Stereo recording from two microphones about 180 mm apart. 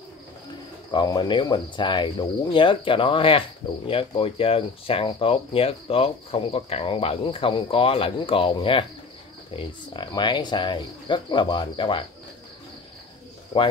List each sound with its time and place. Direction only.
0.9 s cricket: 25° left (ahead or behind)